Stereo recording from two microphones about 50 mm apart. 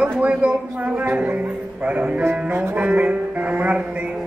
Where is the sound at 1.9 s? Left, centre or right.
Right.